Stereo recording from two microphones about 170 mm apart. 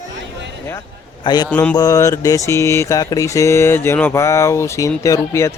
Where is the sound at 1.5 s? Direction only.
10° left (ahead or behind).